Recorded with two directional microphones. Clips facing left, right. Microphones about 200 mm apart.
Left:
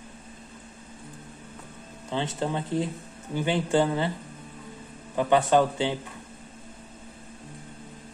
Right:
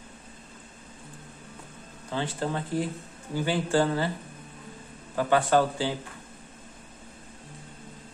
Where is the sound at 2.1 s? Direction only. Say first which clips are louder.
Left 1 dB; 20° left (ahead or behind).